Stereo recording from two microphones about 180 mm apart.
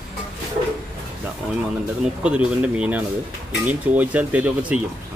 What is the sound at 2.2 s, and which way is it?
Speech, 5° right (ahead or behind).